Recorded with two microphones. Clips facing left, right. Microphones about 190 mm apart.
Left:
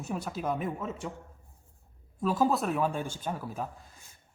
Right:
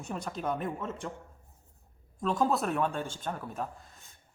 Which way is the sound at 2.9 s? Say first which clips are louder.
Left 2 dB; 10° left (ahead or behind).